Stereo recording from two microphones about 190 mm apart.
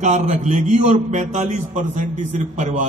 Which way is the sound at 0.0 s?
40° right (ahead or behind).